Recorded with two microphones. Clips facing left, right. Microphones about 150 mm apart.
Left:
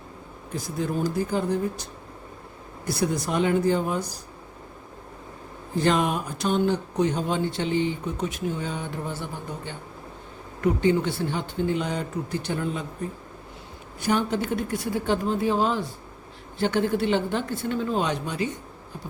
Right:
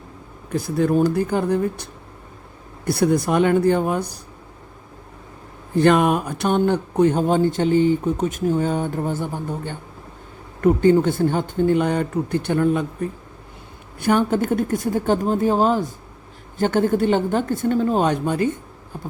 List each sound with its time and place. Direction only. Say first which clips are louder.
0.5 s speech: right 9 dB; 60° right (ahead or behind)
5.7 s speech: right 7 dB; 60° right (ahead or behind)
14.0 s speech: right 6 dB; 50° right (ahead or behind)